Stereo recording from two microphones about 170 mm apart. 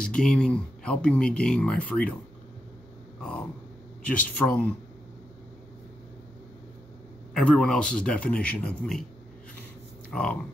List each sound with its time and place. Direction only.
0.0 s speech: 5° left (ahead or behind)
3.2 s a sound: 5° left (ahead or behind)
4.1 s speech: 10° left (ahead or behind)
7.3 s speech: 5° left (ahead or behind)